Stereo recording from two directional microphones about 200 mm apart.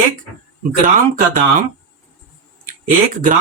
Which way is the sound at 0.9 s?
40° right (ahead or behind).